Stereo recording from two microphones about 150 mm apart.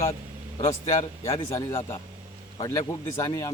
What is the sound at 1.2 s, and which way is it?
Speech, 20° left (ahead or behind).